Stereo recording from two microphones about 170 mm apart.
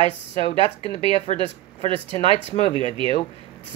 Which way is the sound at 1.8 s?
30° right (ahead or behind).